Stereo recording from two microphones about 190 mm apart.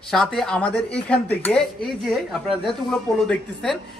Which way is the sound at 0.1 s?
Centre (ahead or behind).